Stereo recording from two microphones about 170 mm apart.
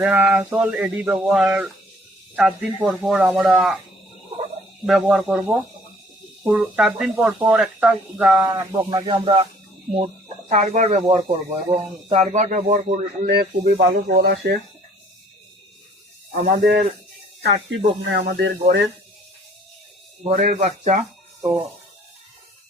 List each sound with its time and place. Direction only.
0.0 s a sound: 10° right (ahead or behind)
2.3 s speech: 5° right (ahead or behind)
4.9 s speech: 5° right (ahead or behind)
7.4 s a sound: 5° right (ahead or behind)
8.4 s speech: 20° right (ahead or behind); by 13.0 s 50° right (ahead or behind)
13.2 s speech: 70° right (ahead or behind)
16.3 s a man's voice: 50° right (ahead or behind)
17.4 s speech: 85° right
20.3 s speech: 50° right (ahead or behind)